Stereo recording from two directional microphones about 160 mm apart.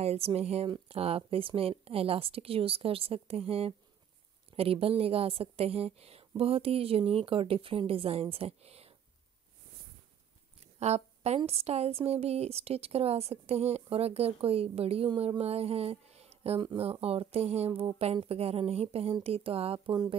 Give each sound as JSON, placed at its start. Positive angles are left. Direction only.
{"t": 0.0, "sound": "a woman's voice", "side_deg": -40}
{"t": 10.6, "sound": "a woman's voice", "side_deg": -40}
{"t": 19.9, "sound": "speech", "side_deg": -25}